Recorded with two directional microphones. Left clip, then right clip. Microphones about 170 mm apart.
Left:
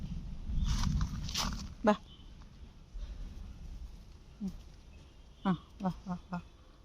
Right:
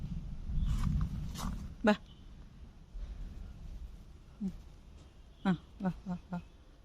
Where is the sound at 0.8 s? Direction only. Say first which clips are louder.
Left 2 dB; 75° left (ahead or behind).